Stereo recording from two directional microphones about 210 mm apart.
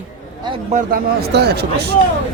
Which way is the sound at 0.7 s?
45° right (ahead or behind).